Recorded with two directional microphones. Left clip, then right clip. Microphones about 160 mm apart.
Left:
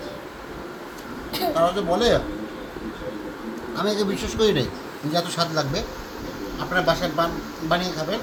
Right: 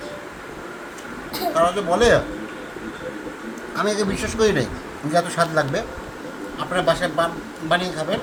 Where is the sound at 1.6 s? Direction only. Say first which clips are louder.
Right 3 dB; 10° right (ahead or behind).